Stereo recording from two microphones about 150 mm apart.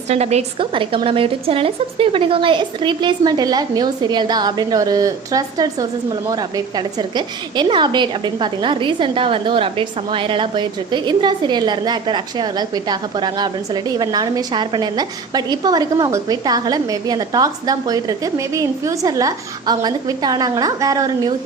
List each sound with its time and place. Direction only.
0.1 s a woman's voice: 45° right (ahead or behind); by 21.3 s 25° right (ahead or behind)